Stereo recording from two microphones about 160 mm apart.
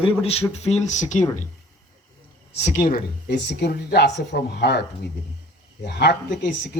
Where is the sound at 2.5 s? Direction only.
45° left (ahead or behind).